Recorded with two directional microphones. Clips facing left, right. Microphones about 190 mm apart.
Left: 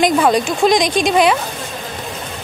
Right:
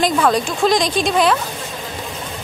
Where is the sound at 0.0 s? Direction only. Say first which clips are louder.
Left 3 dB; 15° left (ahead or behind).